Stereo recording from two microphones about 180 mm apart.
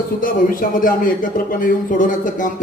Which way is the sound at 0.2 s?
50° left (ahead or behind).